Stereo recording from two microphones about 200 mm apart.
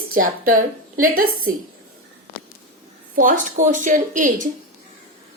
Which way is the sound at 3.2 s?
40° right (ahead or behind).